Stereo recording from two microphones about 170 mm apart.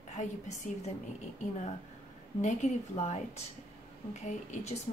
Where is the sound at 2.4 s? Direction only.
40° left (ahead or behind).